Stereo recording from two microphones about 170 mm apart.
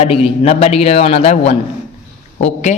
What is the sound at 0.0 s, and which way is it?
A man's voice, 35° left (ahead or behind).